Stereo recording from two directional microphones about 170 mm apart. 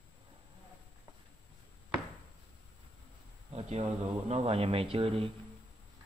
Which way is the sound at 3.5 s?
40° right (ahead or behind).